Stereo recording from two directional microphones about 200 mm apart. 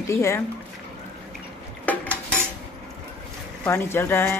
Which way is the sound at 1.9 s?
10° left (ahead or behind).